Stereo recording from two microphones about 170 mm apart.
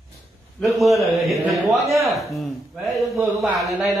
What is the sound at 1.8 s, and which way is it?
Speech, 15° right (ahead or behind).